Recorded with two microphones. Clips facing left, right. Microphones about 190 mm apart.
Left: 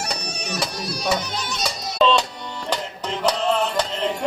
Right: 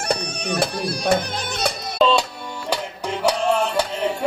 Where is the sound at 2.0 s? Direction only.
10° right (ahead or behind).